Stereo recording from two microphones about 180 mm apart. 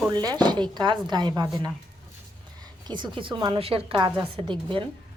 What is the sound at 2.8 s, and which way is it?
A woman's voice, 25° right (ahead or behind).